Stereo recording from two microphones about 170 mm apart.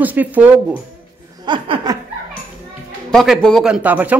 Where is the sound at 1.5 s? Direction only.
25° right (ahead or behind).